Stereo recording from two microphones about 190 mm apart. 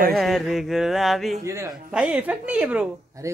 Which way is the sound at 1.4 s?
15° right (ahead or behind).